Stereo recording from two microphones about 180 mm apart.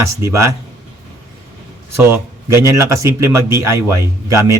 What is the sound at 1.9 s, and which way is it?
A man's voice, 15° right (ahead or behind).